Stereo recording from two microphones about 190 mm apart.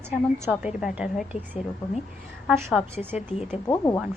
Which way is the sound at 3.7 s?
15° left (ahead or behind).